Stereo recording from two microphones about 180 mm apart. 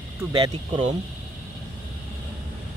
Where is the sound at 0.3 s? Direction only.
30° right (ahead or behind).